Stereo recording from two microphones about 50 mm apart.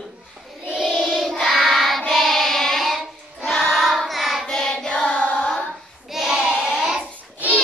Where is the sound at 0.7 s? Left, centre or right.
Centre.